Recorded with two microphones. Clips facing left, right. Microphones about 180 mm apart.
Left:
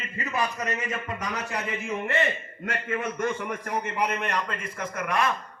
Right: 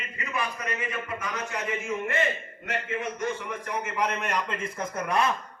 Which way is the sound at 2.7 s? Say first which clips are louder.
Left 1 dB; 50° left (ahead or behind).